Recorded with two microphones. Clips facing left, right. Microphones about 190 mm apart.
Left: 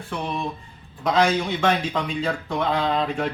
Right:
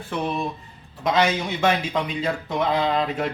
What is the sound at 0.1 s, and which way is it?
Speech, 5° right (ahead or behind).